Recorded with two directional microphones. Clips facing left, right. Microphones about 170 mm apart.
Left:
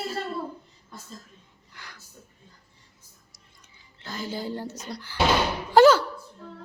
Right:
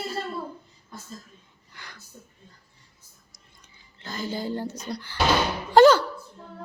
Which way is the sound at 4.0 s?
5° left (ahead or behind).